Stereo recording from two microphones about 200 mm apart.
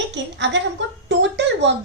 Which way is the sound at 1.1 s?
65° right (ahead or behind).